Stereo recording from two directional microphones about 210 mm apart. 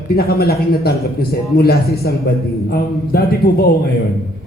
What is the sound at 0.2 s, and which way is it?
Speech, 50° left (ahead or behind).